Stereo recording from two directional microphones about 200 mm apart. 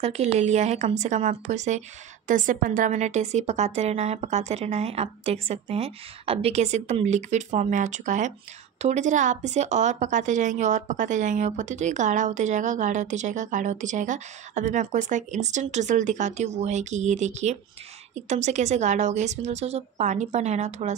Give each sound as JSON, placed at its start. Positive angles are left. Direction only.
{"t": 0.0, "sound": "a woman's voice", "side_deg": -30}